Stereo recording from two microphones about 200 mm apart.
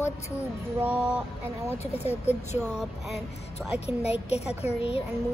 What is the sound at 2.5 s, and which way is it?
Speech, centre (ahead or behind).